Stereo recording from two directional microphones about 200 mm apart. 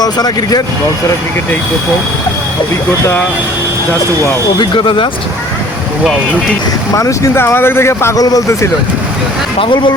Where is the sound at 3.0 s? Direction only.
10° left (ahead or behind).